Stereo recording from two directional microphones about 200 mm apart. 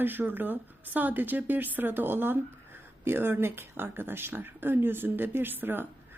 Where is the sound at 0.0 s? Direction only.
10° right (ahead or behind).